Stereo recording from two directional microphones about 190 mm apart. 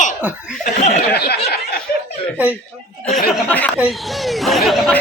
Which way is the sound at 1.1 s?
55° left (ahead or behind).